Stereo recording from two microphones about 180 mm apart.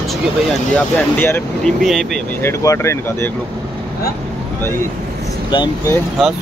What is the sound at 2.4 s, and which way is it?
Speech, 15° left (ahead or behind).